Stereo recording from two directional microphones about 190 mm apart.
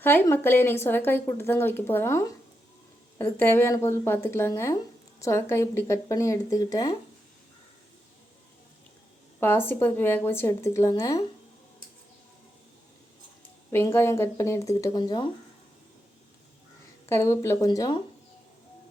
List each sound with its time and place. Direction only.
0.0 s speech: 10° left (ahead or behind)
9.4 s speech: 10° left (ahead or behind)
13.7 s speech: 15° left (ahead or behind)
17.1 s speech: 15° left (ahead or behind)